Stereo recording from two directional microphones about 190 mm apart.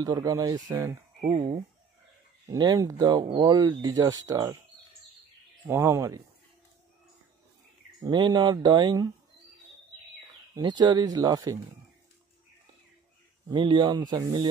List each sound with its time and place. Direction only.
0.0 s speech: 20° right (ahead or behind)
2.5 s speech: 20° right (ahead or behind)
5.7 s speech: 15° right (ahead or behind)
8.0 s speech: 20° right (ahead or behind)
10.5 s speech: 20° right (ahead or behind)
13.5 s speech: 25° right (ahead or behind)